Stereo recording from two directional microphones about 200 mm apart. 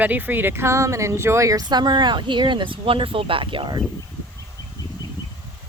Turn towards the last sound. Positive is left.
turn(degrees=-25)  # may be behind; listen again after turning